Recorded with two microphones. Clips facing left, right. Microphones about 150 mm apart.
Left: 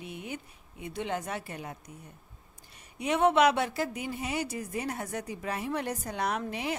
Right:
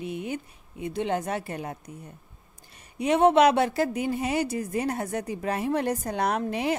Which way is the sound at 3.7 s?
65° right (ahead or behind).